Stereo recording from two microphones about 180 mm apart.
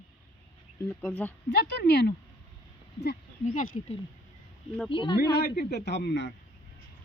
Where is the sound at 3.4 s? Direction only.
45° left (ahead or behind).